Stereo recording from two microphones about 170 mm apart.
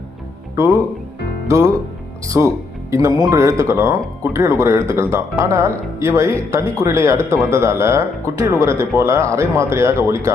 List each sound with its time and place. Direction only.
1.5 s speech: 20° right (ahead or behind)